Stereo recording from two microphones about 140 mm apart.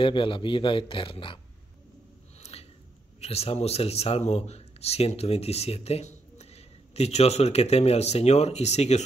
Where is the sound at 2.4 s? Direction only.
50° left (ahead or behind).